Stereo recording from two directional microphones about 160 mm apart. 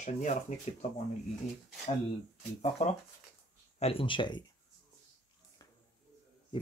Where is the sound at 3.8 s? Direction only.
35° left (ahead or behind).